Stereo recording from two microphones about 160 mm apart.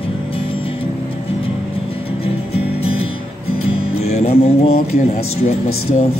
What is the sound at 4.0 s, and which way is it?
Music, 40° left (ahead or behind).